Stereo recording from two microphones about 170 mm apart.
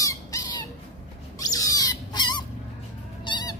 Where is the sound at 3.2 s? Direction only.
25° left (ahead or behind).